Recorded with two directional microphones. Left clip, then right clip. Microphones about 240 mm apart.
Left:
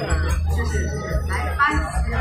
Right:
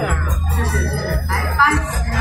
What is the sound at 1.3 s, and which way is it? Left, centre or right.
Music, right.